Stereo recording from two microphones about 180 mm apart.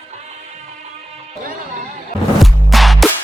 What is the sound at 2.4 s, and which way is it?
Music, centre (ahead or behind).